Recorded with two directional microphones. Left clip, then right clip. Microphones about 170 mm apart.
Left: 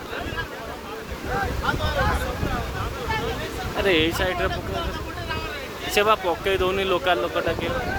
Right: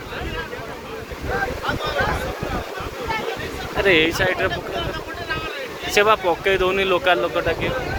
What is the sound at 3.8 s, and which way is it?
Speech, 5° left (ahead or behind).